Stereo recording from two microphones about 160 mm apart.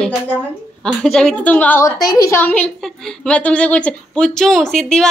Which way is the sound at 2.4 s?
10° left (ahead or behind).